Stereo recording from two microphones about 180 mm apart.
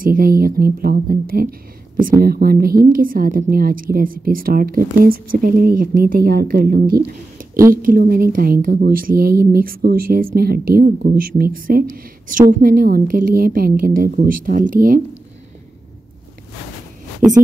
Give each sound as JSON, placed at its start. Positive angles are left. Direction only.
{"t": 0.0, "sound": "a woman's voice", "side_deg": -50}